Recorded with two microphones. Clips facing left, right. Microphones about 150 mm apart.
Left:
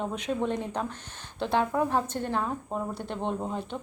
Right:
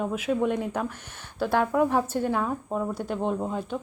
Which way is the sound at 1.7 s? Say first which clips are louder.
Right 4 dB; 10° right (ahead or behind).